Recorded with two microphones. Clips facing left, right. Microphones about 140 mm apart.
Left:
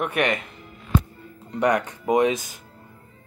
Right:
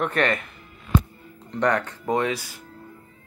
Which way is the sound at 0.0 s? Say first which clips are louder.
Even; 15° left (ahead or behind).